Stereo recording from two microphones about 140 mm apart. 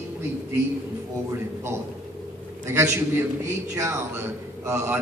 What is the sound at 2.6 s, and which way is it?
A man's voice, 20° right (ahead or behind).